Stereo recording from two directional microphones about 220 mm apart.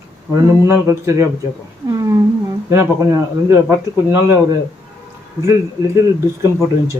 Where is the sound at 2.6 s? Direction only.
10° right (ahead or behind).